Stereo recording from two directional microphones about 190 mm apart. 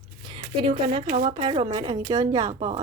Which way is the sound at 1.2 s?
25° right (ahead or behind).